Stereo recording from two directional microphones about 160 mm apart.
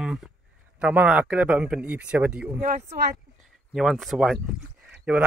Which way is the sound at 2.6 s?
75° right (ahead or behind).